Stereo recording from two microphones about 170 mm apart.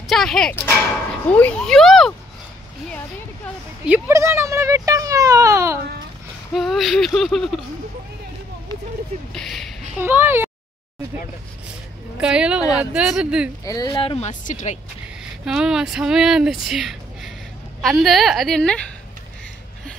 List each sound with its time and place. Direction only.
0.1 s speech: centre (ahead or behind)
3.8 s a child's voice: 15° right (ahead or behind)
6.5 s speech: centre (ahead or behind)
9.3 s speech: centre (ahead or behind)
9.9 s a child's voice: 10° right (ahead or behind)
12.2 s speech: 5° right (ahead or behind)
13.7 s speech: 20° left (ahead or behind)
13.9 s speech: 35° left (ahead or behind)
15.4 s speech: 5° right (ahead or behind)